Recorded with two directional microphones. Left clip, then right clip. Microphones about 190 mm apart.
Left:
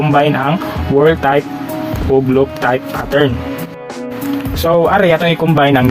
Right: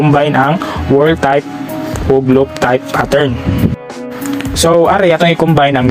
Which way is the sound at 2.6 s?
35° right (ahead or behind).